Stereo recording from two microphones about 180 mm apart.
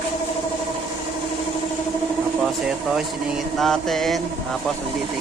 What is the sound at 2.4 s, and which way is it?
Speech, centre (ahead or behind).